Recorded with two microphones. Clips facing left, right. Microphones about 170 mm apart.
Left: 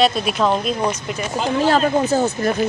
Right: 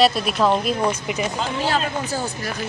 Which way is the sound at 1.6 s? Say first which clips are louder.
Left 7 dB; 45° left (ahead or behind).